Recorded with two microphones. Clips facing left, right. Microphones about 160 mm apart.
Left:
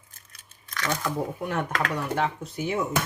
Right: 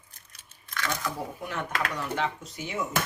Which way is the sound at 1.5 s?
50° left (ahead or behind).